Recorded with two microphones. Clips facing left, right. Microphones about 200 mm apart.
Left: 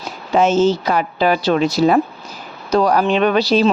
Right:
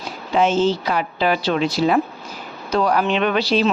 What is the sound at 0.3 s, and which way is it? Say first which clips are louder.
A woman's voice: left 3 dB; 45° left (ahead or behind).